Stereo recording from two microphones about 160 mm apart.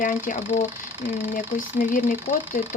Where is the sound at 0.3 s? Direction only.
45° left (ahead or behind).